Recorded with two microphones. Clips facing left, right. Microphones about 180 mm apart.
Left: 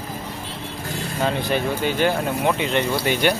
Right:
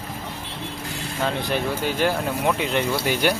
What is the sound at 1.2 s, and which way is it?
Speech, centre (ahead or behind).